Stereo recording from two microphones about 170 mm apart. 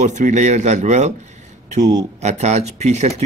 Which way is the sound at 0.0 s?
45° right (ahead or behind).